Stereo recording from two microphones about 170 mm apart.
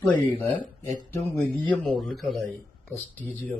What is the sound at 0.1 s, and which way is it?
Speech, 10° left (ahead or behind).